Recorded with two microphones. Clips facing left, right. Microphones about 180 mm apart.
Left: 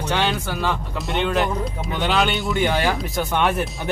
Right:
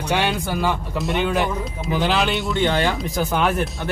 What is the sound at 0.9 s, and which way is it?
Speech, centre (ahead or behind).